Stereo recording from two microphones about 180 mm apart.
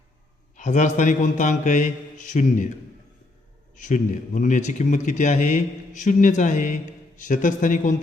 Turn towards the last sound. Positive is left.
turn(degrees=45)  # may be behind; listen again after turning